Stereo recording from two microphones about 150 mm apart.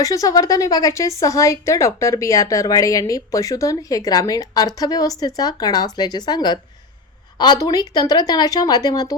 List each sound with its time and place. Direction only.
0.0 s speech: 25° left (ahead or behind)